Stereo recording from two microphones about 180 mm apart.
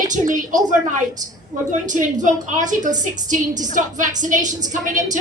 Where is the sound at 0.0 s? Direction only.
45° right (ahead or behind).